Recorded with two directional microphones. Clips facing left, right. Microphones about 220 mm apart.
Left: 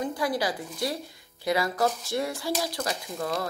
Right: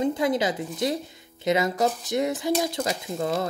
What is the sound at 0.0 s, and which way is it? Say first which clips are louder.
Speech: right 5 dB; 20° right (ahead or behind).